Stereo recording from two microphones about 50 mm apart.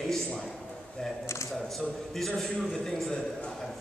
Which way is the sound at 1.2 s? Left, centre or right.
Left.